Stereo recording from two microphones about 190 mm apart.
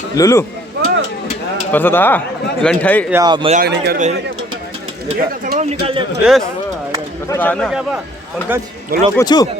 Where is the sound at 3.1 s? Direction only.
20° right (ahead or behind).